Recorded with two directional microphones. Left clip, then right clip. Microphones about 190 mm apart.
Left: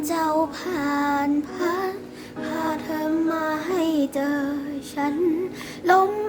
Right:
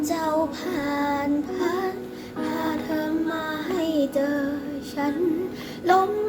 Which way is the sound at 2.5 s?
15° left (ahead or behind).